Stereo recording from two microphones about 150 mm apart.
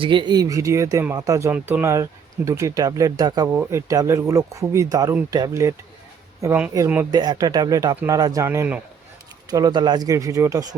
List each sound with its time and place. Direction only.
0.0 s speech: 30° right (ahead or behind); by 7.1 s 15° right (ahead or behind)
7.1 s speech: 25° right (ahead or behind)
9.5 s speech: 25° right (ahead or behind)